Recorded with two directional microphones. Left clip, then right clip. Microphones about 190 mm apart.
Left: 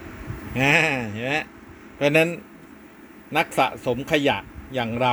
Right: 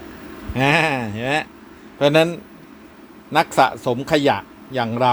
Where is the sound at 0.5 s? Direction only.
10° right (ahead or behind).